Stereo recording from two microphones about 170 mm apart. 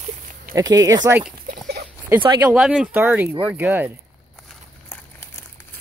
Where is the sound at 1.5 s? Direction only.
65° right (ahead or behind).